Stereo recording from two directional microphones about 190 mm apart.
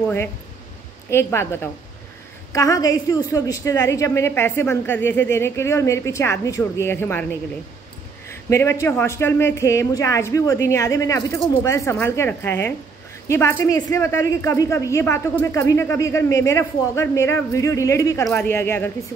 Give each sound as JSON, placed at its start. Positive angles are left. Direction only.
{"t": 1.1, "sound": "a man's voice", "side_deg": 15}
{"t": 8.3, "sound": "a man's voice", "side_deg": 15}